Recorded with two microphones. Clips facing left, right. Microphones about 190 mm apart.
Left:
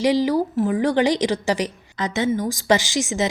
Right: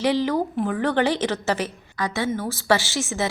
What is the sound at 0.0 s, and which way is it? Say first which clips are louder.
A woman's voice: left 3 dB; 10° left (ahead or behind).